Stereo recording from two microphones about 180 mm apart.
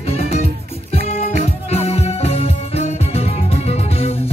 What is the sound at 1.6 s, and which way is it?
Music, 35° left (ahead or behind).